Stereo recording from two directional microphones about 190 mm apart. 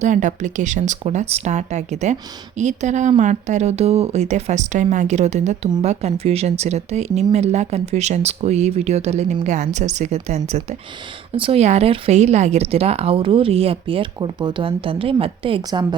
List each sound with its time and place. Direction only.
0.0 s speech: 40° right (ahead or behind); by 16.0 s 25° right (ahead or behind)